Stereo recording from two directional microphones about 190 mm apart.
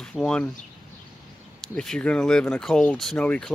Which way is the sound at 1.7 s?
5° left (ahead or behind).